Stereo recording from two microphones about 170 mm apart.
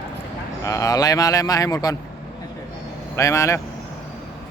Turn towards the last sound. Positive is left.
turn(degrees=20)  # may be behind; listen again after turning